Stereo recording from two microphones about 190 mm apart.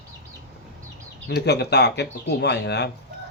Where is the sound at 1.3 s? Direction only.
60° left (ahead or behind).